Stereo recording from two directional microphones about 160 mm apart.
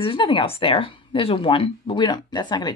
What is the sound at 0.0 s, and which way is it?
Speech, 30° left (ahead or behind).